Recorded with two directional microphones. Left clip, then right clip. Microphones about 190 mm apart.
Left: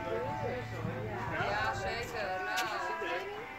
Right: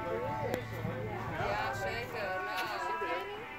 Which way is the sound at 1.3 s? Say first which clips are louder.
Left 1 dB; 45° left (ahead or behind).